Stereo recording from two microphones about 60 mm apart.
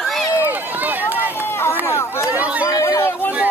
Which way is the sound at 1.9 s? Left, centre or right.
Left.